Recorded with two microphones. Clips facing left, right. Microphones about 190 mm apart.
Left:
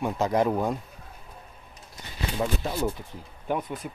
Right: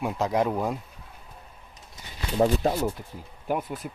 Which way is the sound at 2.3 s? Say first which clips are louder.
Right 7 dB; 40° right (ahead or behind).